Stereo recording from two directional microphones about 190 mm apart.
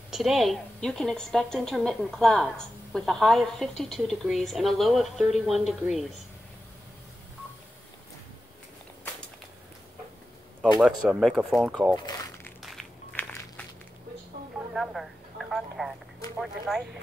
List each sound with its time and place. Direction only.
0.1 s a woman's voice: centre (ahead or behind)
10.8 s a woman's voice: centre (ahead or behind)
11.9 s a sound: 15° left (ahead or behind)
12.6 s a sound: centre (ahead or behind)
14.7 s telephone: centre (ahead or behind)
16.3 s a woman's voice: centre (ahead or behind)